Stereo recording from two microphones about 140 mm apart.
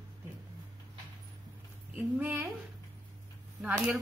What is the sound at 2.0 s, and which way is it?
Speech, 15° right (ahead or behind).